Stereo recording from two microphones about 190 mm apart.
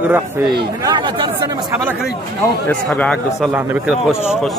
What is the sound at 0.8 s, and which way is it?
Speech, 20° right (ahead or behind).